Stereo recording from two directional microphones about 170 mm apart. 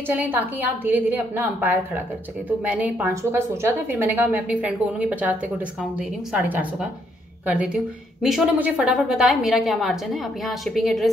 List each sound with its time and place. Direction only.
0.0 s a woman's voice: 10° right (ahead or behind)